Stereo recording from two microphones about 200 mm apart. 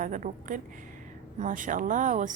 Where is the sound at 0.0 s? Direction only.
40° right (ahead or behind).